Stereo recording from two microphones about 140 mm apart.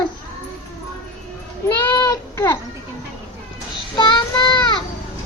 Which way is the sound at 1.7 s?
20° left (ahead or behind).